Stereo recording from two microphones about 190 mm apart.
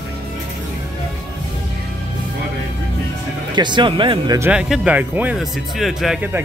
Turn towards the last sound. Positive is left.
turn(degrees=-5)  # may be behind; listen again after turning